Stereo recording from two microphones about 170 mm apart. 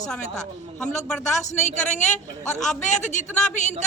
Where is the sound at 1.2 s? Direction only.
45° left (ahead or behind).